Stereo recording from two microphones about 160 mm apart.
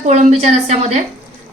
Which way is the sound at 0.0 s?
45° right (ahead or behind).